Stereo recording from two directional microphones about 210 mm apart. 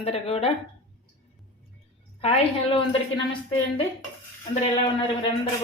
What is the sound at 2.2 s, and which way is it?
Speech, 30° left (ahead or behind).